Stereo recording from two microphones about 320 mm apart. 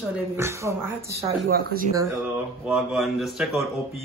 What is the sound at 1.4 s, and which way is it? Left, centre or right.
Speech, right.